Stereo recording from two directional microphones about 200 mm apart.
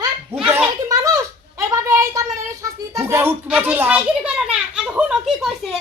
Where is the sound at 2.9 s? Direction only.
15° right (ahead or behind).